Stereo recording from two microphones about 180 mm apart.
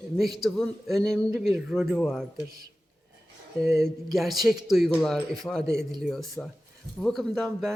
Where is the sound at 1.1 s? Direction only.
15° right (ahead or behind).